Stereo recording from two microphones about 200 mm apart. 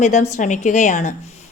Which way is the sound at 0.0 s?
35° left (ahead or behind).